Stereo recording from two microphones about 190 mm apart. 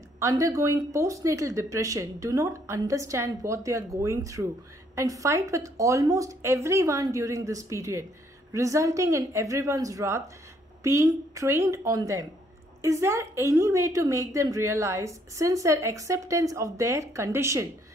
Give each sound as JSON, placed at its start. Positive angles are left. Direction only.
{"t": 0.2, "sound": "a woman's voice", "side_deg": -15}